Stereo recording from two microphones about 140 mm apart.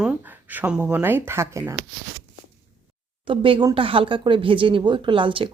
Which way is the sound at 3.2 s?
40° right (ahead or behind).